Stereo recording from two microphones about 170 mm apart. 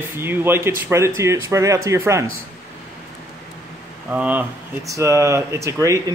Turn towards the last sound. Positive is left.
turn(degrees=-20)  # may be behind; listen again after turning